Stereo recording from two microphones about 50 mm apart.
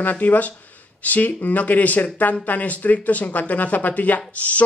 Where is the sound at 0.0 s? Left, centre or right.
Left.